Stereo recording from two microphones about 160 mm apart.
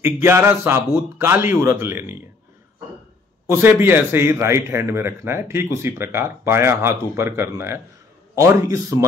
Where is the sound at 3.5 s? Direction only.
15° right (ahead or behind).